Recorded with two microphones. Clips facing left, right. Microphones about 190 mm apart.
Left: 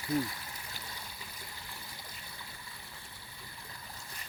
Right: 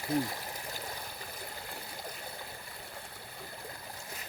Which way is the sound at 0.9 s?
55° right (ahead or behind).